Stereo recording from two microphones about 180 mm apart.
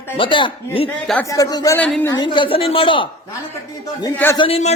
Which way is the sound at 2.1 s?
25° left (ahead or behind).